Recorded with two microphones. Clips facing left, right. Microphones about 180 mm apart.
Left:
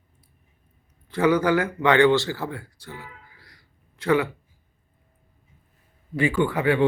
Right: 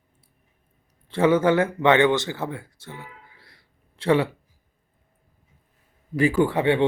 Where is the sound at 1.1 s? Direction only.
25° right (ahead or behind).